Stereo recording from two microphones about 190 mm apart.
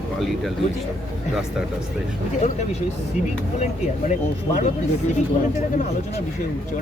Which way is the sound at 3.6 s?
40° left (ahead or behind).